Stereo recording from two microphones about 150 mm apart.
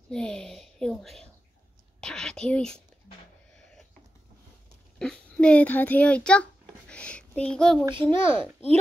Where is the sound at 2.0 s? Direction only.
5° left (ahead or behind).